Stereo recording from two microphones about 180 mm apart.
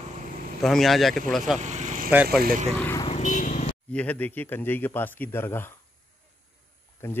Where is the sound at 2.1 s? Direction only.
10° right (ahead or behind).